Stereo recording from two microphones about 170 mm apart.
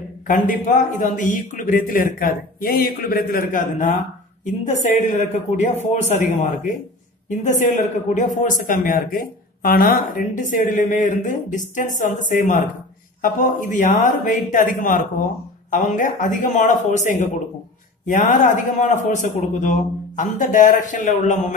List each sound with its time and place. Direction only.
0.3 s speech: 50° left (ahead or behind)
8.1 s speech: 50° left (ahead or behind)